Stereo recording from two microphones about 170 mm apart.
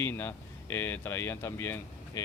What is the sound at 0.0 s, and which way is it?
A man's voice, 15° left (ahead or behind).